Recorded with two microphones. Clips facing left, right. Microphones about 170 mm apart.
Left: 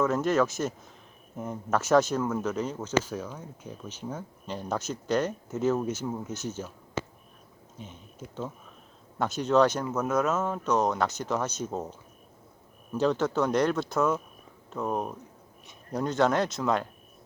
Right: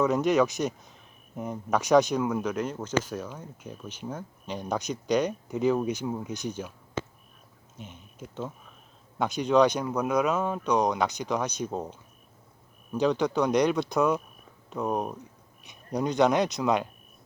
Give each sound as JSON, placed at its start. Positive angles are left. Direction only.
{"t": 0.0, "sound": "speech", "side_deg": -15}
{"t": 7.0, "sound": "a sound", "side_deg": 10}
{"t": 9.1, "sound": "speech", "side_deg": -10}